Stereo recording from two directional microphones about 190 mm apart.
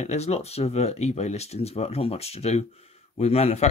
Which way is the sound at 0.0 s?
35° left (ahead or behind).